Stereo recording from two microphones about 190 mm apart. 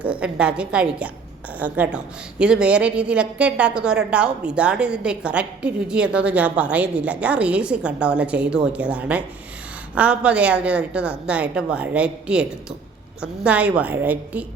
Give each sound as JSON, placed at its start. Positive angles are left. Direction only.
{"t": 0.0, "sound": "a woman's voice", "side_deg": -5}